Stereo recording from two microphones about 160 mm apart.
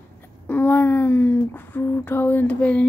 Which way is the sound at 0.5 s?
10° left (ahead or behind).